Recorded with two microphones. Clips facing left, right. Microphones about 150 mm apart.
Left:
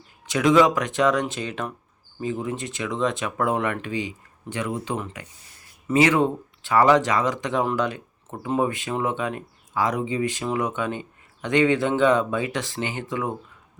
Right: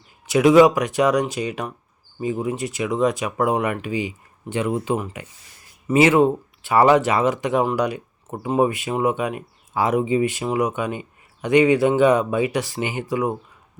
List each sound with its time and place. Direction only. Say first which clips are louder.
0.3 s speech: right 5 dB; 20° right (ahead or behind)